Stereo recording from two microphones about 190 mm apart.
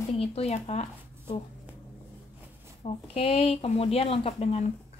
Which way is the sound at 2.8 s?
30° left (ahead or behind).